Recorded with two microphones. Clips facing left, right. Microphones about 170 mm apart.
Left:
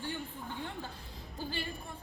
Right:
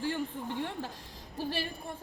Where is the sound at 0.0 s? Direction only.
85° right.